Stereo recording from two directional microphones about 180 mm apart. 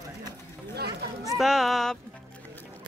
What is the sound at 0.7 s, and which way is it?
Run, 60° right (ahead or behind).